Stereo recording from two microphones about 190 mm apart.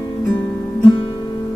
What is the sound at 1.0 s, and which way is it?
Music, 25° left (ahead or behind).